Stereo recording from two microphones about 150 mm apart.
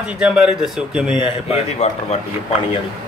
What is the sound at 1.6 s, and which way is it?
Speech, 45° left (ahead or behind).